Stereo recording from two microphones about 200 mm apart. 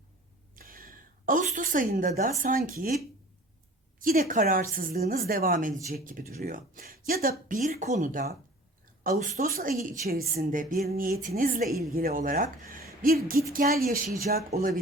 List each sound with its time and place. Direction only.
0.5 s a sound: 45° right (ahead or behind)
2.4 s speech: 40° right (ahead or behind)
4.0 s speech: 45° right (ahead or behind)